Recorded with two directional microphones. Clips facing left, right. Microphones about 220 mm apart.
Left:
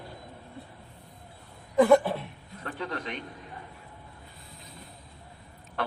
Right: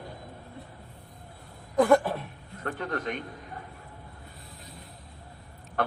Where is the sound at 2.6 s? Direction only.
50° right (ahead or behind).